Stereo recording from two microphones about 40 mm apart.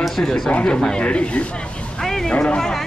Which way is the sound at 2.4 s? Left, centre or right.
Centre.